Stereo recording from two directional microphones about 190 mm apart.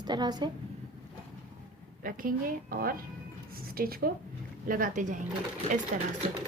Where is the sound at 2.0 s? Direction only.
45° right (ahead or behind).